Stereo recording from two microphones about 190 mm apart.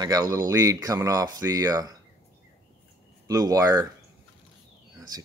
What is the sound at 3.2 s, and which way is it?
Speech, 20° right (ahead or behind).